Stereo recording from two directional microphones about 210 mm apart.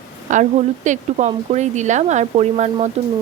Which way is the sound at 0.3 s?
35° right (ahead or behind).